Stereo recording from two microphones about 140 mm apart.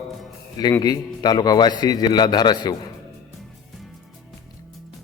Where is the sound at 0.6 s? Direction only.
25° left (ahead or behind).